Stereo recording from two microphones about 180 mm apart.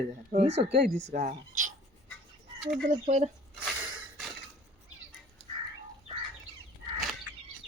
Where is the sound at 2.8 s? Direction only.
45° right (ahead or behind).